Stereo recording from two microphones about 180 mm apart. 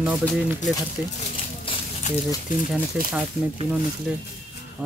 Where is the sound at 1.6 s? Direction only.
30° left (ahead or behind).